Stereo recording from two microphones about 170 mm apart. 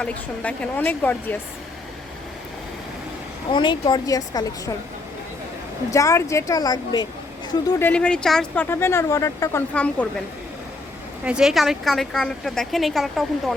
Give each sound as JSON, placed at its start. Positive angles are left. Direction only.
{"t": 0.0, "sound": "speech", "side_deg": 5}
{"t": 3.5, "sound": "a woman's voice", "side_deg": 30}
{"t": 5.9, "sound": "a woman's voice", "side_deg": 20}
{"t": 7.7, "sound": "speech", "side_deg": 10}
{"t": 11.2, "sound": "a woman's voice", "side_deg": -5}